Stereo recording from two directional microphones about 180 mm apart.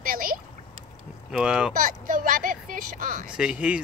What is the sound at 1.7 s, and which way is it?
Speech, 50° right (ahead or behind).